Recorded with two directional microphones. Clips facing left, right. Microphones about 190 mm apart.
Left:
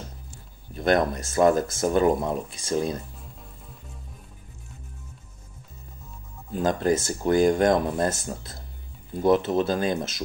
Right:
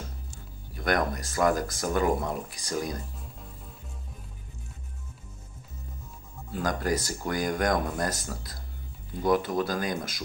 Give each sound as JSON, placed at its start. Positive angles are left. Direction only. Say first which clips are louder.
{"t": 0.7, "sound": "speech", "louder": "left 5 dB", "side_deg": 25}
{"t": 3.2, "sound": "music", "louder": "right 1 dB", "side_deg": 0}
{"t": 6.5, "sound": "speech", "louder": "left 5 dB", "side_deg": 25}